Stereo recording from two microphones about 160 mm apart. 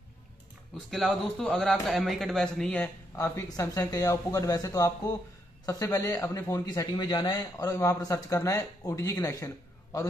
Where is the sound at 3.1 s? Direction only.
20° left (ahead or behind).